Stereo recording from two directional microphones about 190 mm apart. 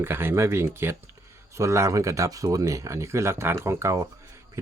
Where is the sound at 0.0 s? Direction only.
10° right (ahead or behind).